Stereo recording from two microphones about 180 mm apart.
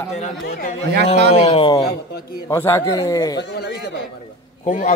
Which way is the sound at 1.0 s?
30° left (ahead or behind).